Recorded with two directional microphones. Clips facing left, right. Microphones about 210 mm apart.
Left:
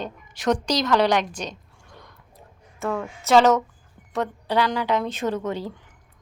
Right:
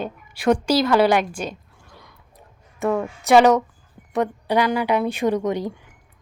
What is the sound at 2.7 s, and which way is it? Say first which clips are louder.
A woman's voice: right 5 dB; 20° right (ahead or behind).